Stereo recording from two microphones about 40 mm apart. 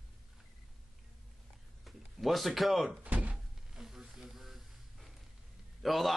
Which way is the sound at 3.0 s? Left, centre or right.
Right.